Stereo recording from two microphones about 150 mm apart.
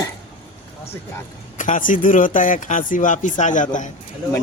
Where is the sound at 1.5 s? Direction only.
60° left (ahead or behind).